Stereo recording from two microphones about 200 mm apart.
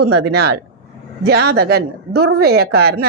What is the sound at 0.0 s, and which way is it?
A woman's voice, 55° right (ahead or behind).